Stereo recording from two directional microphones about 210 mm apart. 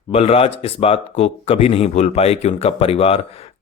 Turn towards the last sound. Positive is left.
turn(degrees=30)  # may be behind; listen again after turning